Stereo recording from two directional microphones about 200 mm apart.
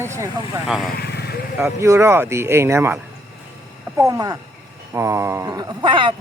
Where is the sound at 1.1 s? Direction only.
55° left (ahead or behind).